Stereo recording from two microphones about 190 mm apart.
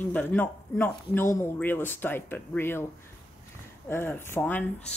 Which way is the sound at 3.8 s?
10° left (ahead or behind).